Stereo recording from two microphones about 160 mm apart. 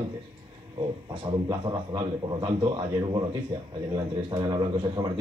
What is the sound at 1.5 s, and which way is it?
A man's voice, 25° right (ahead or behind).